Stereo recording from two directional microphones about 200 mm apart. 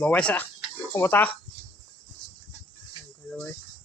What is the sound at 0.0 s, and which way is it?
Speech, 5° left (ahead or behind).